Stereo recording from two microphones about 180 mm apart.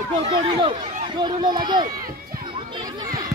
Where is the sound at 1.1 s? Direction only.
25° right (ahead or behind).